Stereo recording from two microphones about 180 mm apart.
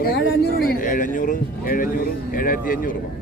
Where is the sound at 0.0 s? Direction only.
60° left (ahead or behind).